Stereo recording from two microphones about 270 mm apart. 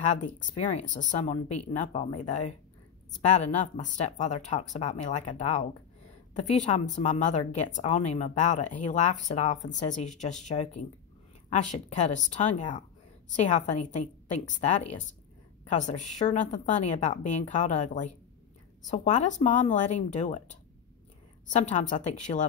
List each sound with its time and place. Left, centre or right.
0.6 s a woman's voice: left
21.5 s a woman's voice: left